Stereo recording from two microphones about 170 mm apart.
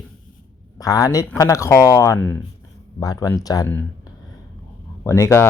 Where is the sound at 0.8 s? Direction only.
20° left (ahead or behind).